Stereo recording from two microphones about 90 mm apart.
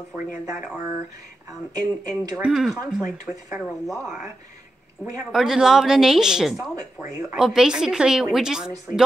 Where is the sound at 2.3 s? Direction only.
10° right (ahead or behind).